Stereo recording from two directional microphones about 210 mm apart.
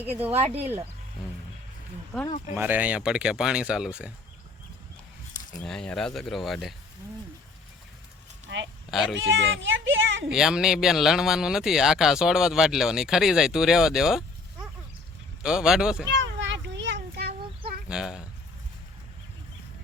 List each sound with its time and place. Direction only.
0.0 s speech: 10° right (ahead or behind)
0.3 s speech: 30° right (ahead or behind)
2.1 s speech: 5° right (ahead or behind)
5.6 s speech: 5° left (ahead or behind)
8.4 s speech: 60° right (ahead or behind)
8.9 s speech: centre (ahead or behind)
9.6 s speech: 60° right (ahead or behind)
10.2 s speech: 5° right (ahead or behind)
15.4 s speech: 5° right (ahead or behind)
16.1 s children playing: 60° right (ahead or behind)
17.8 s a sound: 5° right (ahead or behind)